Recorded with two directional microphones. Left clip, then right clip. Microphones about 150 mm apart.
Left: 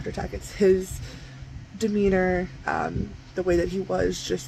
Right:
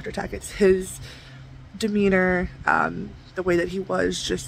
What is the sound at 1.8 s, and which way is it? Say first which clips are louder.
Speech: right 2 dB; 25° right (ahead or behind).